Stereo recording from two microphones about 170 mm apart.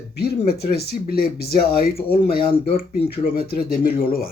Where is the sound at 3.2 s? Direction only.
60° left (ahead or behind).